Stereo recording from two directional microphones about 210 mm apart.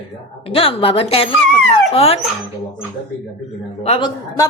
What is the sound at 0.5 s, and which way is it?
A woman's voice, 25° left (ahead or behind).